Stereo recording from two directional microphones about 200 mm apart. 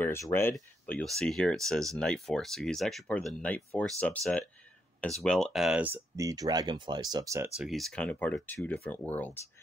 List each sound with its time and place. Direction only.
0.0 s speech: 10° left (ahead or behind); by 7.4 s 15° right (ahead or behind)
7.5 s speech: centre (ahead or behind)